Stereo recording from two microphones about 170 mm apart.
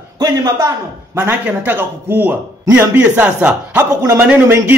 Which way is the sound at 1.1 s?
10° right (ahead or behind).